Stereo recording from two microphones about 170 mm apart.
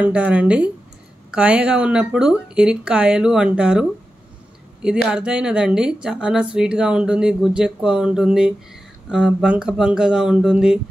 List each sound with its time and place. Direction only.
0.0 s a woman's voice: 5° right (ahead or behind)
4.8 s a woman's voice: 5° right (ahead or behind)